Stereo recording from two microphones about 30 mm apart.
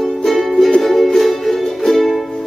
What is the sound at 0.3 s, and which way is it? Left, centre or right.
Music, centre.